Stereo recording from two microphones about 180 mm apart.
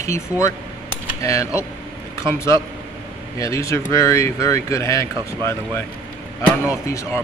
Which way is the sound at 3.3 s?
15° left (ahead or behind).